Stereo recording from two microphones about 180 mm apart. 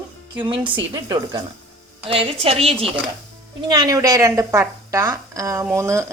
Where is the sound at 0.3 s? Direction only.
25° right (ahead or behind).